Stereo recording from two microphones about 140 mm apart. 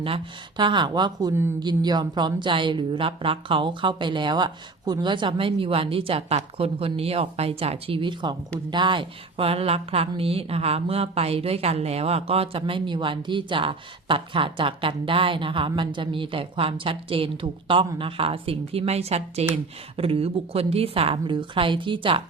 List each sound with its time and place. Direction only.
0.0 s speech: 35° right (ahead or behind)
1.3 s speech: 20° right (ahead or behind)
1.5 s a woman's voice: 30° right (ahead or behind)